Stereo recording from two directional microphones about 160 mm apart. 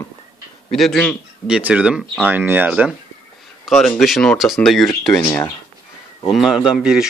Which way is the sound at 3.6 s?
5° left (ahead or behind).